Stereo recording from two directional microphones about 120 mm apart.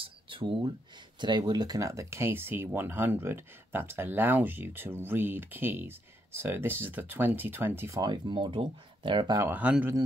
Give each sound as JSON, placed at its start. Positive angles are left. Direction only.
{"t": 0.0, "sound": "a sound", "side_deg": -45}
{"t": 1.2, "sound": "speech", "side_deg": -35}
{"t": 8.0, "sound": "speech", "side_deg": -40}
{"t": 9.4, "sound": "speech", "side_deg": -15}